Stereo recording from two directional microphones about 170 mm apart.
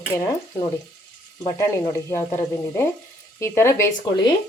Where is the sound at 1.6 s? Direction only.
15° left (ahead or behind).